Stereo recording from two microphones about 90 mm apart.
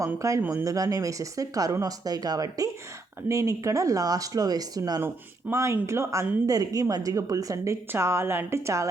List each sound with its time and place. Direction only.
0.0 s a woman's voice: 35° right (ahead or behind)
5.0 s a woman's voice: 30° right (ahead or behind)